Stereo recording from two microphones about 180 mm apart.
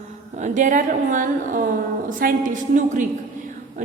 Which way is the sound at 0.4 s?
45° right (ahead or behind).